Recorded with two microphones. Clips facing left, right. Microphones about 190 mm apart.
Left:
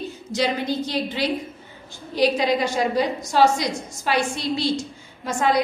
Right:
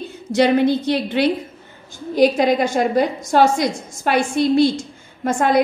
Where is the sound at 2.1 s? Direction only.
50° right (ahead or behind).